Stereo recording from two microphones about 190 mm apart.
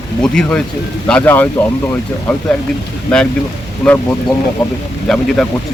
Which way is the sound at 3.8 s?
5° left (ahead or behind).